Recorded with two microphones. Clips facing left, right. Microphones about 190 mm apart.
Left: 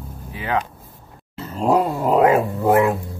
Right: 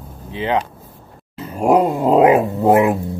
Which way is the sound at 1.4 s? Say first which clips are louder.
Right 4 dB; 10° right (ahead or behind).